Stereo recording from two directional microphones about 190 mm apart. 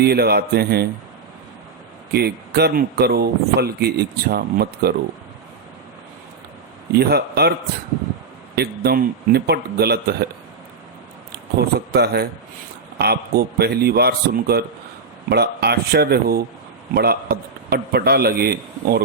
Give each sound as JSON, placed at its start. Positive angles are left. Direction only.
{"t": 0.0, "sound": "speech", "side_deg": -55}
{"t": 2.1, "sound": "speech", "side_deg": -55}
{"t": 6.9, "sound": "speech", "side_deg": -60}
{"t": 8.5, "sound": "speech", "side_deg": -55}
{"t": 11.9, "sound": "speech", "side_deg": -60}